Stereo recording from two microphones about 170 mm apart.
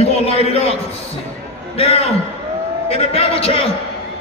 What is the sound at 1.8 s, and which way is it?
Speech, 35° left (ahead or behind).